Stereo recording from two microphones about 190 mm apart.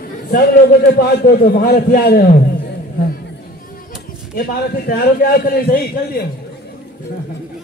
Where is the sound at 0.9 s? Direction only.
50° left (ahead or behind).